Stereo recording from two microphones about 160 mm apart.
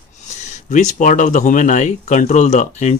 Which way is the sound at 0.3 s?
50° left (ahead or behind).